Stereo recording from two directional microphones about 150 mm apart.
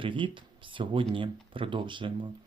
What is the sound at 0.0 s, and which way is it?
Speech, 35° right (ahead or behind).